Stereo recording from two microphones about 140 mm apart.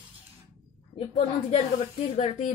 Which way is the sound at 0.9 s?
45° left (ahead or behind).